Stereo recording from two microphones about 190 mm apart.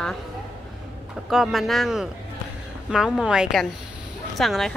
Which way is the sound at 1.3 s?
Centre (ahead or behind).